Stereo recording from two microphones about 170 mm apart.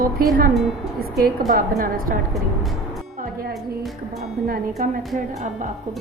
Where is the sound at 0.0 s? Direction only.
60° right (ahead or behind).